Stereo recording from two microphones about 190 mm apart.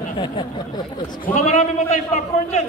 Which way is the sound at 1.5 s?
35° left (ahead or behind).